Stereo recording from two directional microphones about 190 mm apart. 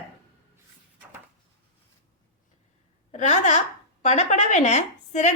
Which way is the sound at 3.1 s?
40° left (ahead or behind).